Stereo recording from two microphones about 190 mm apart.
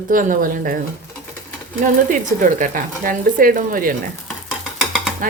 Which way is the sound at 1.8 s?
45° right (ahead or behind).